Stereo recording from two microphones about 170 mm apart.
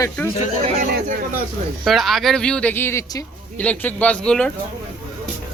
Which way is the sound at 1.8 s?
Centre (ahead or behind).